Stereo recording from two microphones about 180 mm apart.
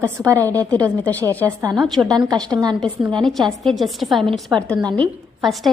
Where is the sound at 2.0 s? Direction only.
20° right (ahead or behind).